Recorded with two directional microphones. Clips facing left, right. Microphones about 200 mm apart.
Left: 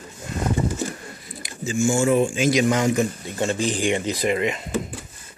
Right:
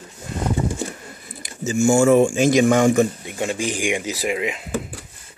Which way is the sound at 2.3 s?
45° right (ahead or behind).